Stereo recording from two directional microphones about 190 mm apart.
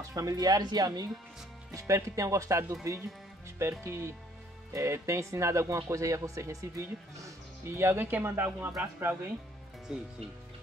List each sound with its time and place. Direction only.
0.1 s speech: 20° right (ahead or behind)